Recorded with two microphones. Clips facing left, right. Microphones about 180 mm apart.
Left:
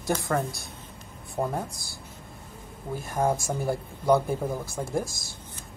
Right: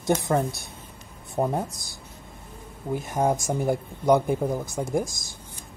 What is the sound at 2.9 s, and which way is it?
Speech, 20° right (ahead or behind).